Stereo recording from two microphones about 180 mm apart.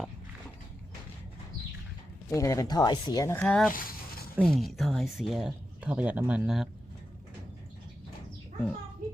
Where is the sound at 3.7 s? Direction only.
50° left (ahead or behind).